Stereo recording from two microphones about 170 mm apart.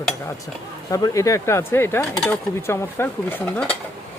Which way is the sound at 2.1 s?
5° left (ahead or behind).